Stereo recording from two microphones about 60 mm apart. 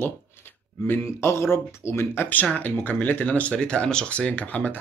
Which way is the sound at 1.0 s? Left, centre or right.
Left.